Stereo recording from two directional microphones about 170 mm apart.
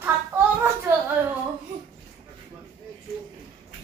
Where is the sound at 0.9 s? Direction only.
15° right (ahead or behind).